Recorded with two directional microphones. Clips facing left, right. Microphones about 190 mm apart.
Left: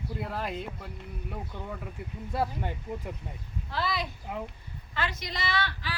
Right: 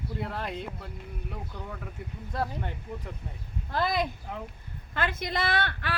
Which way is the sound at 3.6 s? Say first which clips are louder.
Right 4 dB; 50° right (ahead or behind).